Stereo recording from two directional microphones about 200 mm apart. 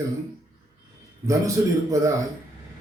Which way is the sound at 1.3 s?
15° right (ahead or behind).